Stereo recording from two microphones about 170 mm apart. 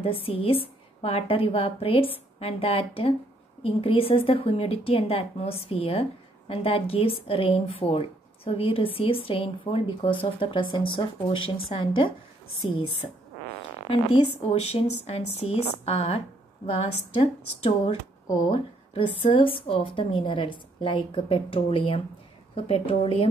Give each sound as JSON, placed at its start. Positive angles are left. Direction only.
{"t": 0.0, "sound": "a woman's voice", "side_deg": 35}
{"t": 13.8, "sound": "a woman's voice", "side_deg": 35}
{"t": 19.2, "sound": "a woman's voice", "side_deg": 30}